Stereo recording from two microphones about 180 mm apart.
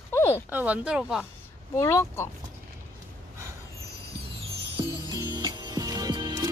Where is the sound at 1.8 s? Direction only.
15° left (ahead or behind).